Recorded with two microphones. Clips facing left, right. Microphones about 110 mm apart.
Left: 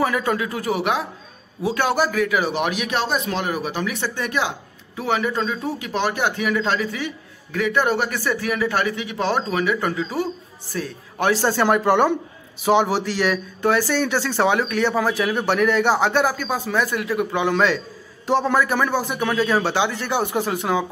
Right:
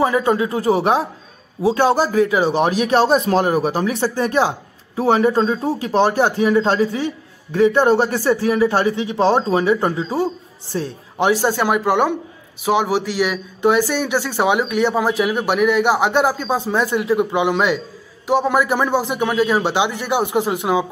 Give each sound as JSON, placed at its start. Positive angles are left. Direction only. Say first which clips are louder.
{"t": 0.0, "sound": "a man's voice", "louder": "right 5 dB", "side_deg": -25}
{"t": 11.2, "sound": "a man's voice", "louder": "right 1 dB", "side_deg": -10}
{"t": 13.6, "sound": "speech", "louder": "right 4 dB", "side_deg": -20}
{"t": 16.1, "sound": "a man's voice", "louder": "right 3 dB", "side_deg": -25}